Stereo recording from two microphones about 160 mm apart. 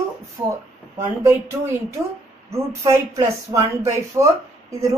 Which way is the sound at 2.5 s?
20° right (ahead or behind).